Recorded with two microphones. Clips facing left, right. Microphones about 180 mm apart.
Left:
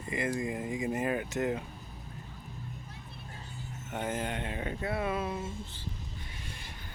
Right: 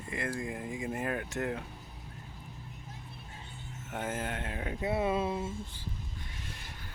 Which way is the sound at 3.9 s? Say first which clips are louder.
Left 2 dB; 5° right (ahead or behind).